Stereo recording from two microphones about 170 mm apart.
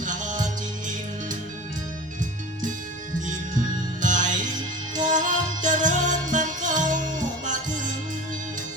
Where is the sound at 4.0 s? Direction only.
50° right (ahead or behind).